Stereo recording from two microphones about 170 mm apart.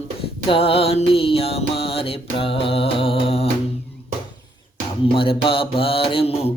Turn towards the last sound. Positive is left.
turn(degrees=35)  # may be behind; listen again after turning